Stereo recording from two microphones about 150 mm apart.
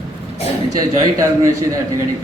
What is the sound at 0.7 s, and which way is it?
Speech, 25° right (ahead or behind).